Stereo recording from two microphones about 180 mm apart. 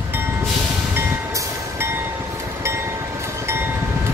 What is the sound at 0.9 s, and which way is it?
Train, 15° right (ahead or behind).